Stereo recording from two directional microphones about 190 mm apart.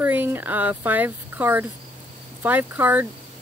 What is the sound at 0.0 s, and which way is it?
Speech, 10° right (ahead or behind).